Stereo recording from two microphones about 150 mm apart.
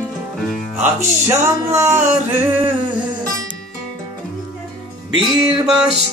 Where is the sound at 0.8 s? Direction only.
15° right (ahead or behind).